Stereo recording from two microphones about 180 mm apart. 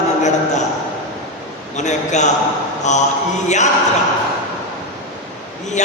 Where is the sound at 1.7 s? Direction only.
40° left (ahead or behind).